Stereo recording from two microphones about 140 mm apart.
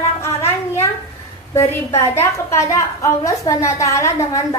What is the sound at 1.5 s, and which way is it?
A woman's voice, 20° left (ahead or behind).